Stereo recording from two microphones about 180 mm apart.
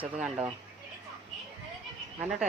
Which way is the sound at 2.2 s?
5° right (ahead or behind).